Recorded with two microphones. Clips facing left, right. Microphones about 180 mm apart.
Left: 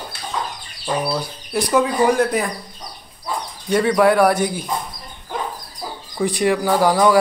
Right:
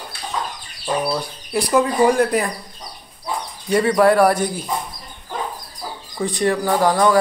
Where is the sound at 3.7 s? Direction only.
Centre (ahead or behind).